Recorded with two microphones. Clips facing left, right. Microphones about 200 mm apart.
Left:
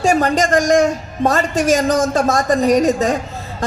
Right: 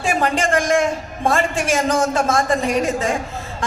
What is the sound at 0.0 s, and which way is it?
A man's voice, 40° left (ahead or behind).